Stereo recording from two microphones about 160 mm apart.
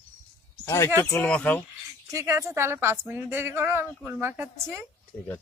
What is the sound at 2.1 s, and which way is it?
A woman's voice, 20° right (ahead or behind).